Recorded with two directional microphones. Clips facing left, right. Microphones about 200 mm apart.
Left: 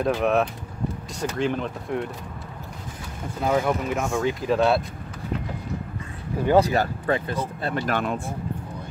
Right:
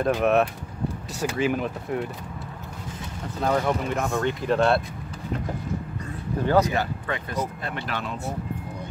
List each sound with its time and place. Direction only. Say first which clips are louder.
0.0 s speech: right 1 dB; centre (ahead or behind)
3.3 s speech: left 1 dB; 5° left (ahead or behind)
6.5 s speech: left 3 dB; 35° left (ahead or behind); by 8.2 s 50° left (ahead or behind)